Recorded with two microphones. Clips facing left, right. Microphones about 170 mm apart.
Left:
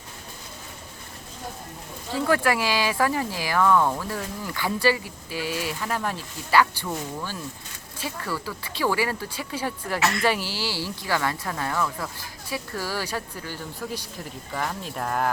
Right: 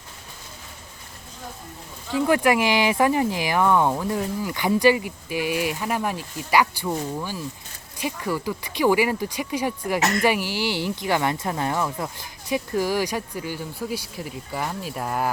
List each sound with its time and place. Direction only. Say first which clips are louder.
2.2 s speech: right 3 dB; 15° right (ahead or behind)
10.0 s speech: even; 40° right (ahead or behind)
10.2 s speech: right 3 dB; 15° right (ahead or behind)